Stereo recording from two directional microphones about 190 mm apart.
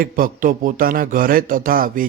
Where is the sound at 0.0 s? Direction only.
45° right (ahead or behind).